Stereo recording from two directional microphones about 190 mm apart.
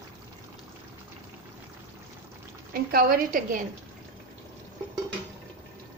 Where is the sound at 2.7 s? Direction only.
50° right (ahead or behind).